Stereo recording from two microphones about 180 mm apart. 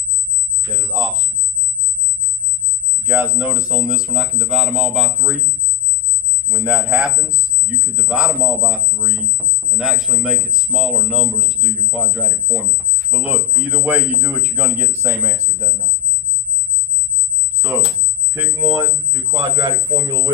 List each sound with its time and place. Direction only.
3.1 s speech: 10° right (ahead or behind)
6.5 s speech: 5° right (ahead or behind)
18.3 s speech: 15° right (ahead or behind)